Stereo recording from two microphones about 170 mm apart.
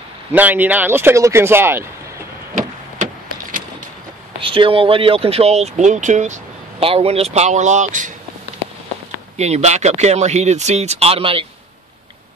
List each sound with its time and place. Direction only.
0.3 s speech: 10° right (ahead or behind)
4.4 s speech: 30° right (ahead or behind)
9.4 s speech: 40° right (ahead or behind)